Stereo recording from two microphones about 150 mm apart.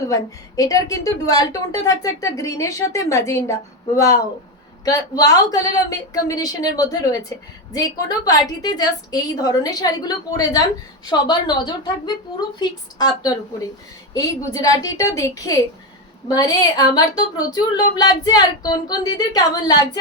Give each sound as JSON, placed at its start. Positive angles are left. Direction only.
{"t": 0.1, "sound": "a woman's voice", "side_deg": 25}
{"t": 11.1, "sound": "a woman's voice", "side_deg": 30}